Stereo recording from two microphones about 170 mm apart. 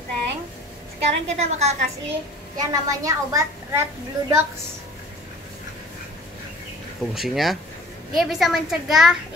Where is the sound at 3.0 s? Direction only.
20° right (ahead or behind).